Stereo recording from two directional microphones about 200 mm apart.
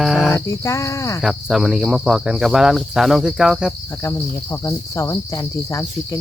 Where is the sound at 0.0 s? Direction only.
Centre (ahead or behind).